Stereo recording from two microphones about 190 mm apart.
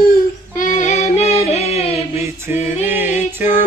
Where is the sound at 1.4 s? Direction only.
35° left (ahead or behind).